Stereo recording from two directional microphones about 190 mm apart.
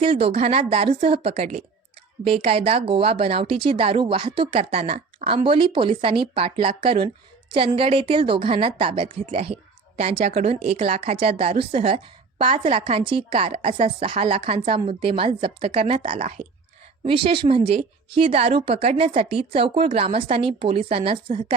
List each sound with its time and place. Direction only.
0.0 s a woman's voice: 30° right (ahead or behind)